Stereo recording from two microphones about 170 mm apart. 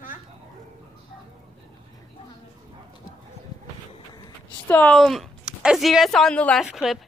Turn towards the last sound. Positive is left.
turn(degrees=0)  # may be behind; listen again after turning